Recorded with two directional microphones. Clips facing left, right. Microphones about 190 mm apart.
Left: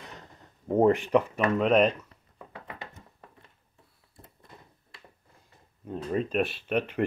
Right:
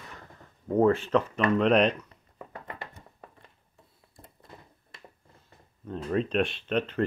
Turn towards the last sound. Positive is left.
turn(degrees=10)  # may be behind; listen again after turning